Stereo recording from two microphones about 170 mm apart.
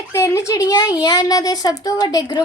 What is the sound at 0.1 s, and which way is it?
Speech, 15° left (ahead or behind).